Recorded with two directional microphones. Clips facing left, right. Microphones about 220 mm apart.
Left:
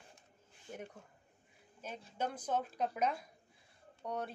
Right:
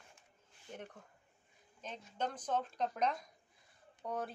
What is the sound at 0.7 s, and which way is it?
Speech, 10° left (ahead or behind).